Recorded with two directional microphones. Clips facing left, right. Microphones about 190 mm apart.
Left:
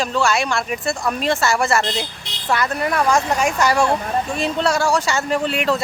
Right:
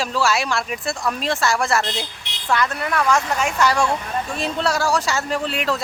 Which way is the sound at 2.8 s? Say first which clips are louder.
Left 2 dB; 35° left (ahead or behind).